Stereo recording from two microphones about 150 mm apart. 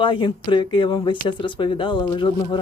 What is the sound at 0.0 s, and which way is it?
Speech, 35° left (ahead or behind).